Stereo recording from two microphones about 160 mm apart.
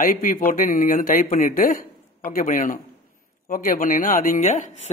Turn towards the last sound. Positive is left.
turn(degrees=50)  # may be behind; listen again after turning